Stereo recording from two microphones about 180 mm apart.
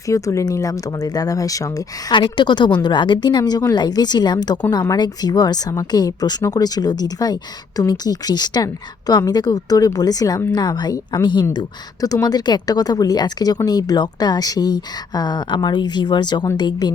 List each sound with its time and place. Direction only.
0.1 s speech: 15° left (ahead or behind)